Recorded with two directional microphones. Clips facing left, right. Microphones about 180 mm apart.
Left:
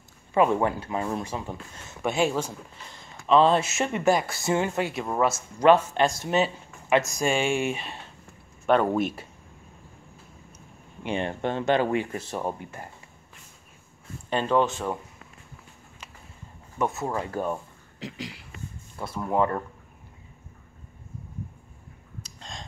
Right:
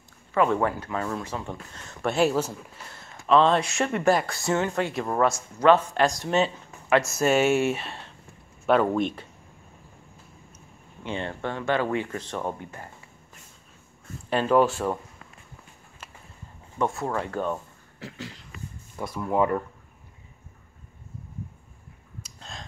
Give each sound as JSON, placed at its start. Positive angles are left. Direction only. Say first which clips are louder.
{"t": 0.3, "sound": "speech", "louder": "left 1 dB", "side_deg": 20}
{"t": 1.9, "sound": "speech", "louder": "right 2 dB", "side_deg": 0}
{"t": 11.1, "sound": "speech", "louder": "left 3 dB", "side_deg": 15}
{"t": 14.3, "sound": "speech", "louder": "right 3 dB", "side_deg": -5}
{"t": 17.1, "sound": "speech", "louder": "right 1 dB", "side_deg": 10}
{"t": 19.3, "sound": "speech", "louder": "right 1 dB", "side_deg": -10}
{"t": 22.2, "sound": "gasp", "louder": "left 1 dB", "side_deg": -5}